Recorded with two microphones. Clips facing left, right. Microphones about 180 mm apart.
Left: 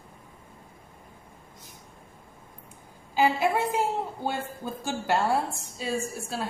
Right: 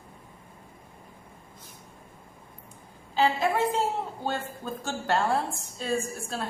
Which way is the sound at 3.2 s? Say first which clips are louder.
Left 1 dB; 10° left (ahead or behind).